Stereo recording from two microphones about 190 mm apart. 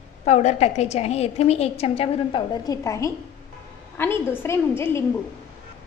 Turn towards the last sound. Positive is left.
turn(degrees=15)  # may be behind; listen again after turning